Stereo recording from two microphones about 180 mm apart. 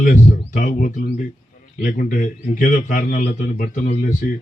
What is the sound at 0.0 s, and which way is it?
A man's voice, 45° left (ahead or behind).